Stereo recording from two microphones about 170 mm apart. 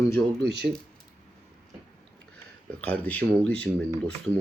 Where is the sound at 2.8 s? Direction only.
10° left (ahead or behind).